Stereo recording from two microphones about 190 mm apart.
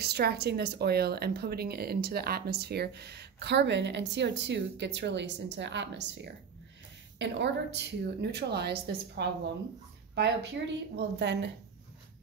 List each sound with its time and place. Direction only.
0.0 s a woman's voice: 60° right (ahead or behind)